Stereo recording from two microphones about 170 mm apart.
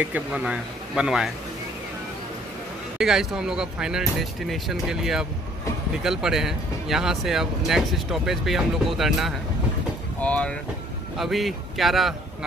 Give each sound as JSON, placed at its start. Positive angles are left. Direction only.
{"t": 0.0, "sound": "speech", "side_deg": -10}
{"t": 3.0, "sound": "speech", "side_deg": -5}